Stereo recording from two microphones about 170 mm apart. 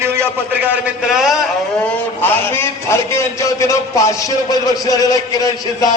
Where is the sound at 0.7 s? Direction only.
5° right (ahead or behind).